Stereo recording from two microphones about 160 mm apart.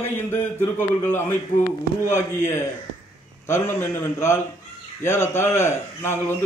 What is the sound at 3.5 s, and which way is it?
A man's voice, 15° left (ahead or behind).